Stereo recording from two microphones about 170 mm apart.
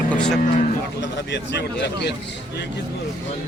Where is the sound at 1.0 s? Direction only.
90° left.